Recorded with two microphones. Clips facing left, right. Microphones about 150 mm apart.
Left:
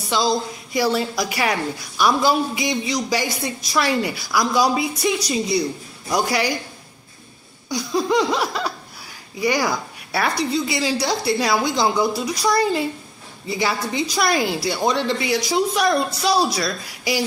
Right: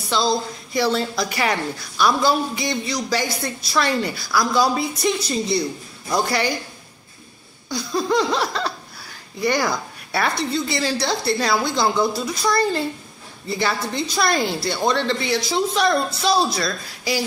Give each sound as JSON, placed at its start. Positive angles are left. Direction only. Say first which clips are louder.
{"t": 0.1, "sound": "a woman's voice", "louder": "even", "side_deg": 10}
{"t": 7.7, "sound": "a woman's voice", "louder": "left 1 dB", "side_deg": 10}